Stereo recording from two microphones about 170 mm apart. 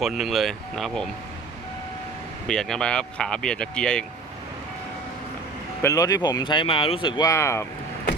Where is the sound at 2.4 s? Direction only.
5° left (ahead or behind).